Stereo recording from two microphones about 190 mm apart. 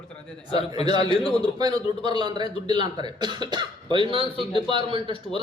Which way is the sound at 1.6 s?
20° right (ahead or behind).